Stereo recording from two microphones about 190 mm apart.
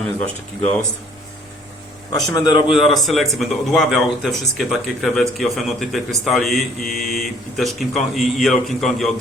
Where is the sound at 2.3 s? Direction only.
25° left (ahead or behind).